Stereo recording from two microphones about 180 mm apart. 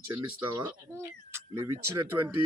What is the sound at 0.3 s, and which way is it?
Speech, 15° right (ahead or behind).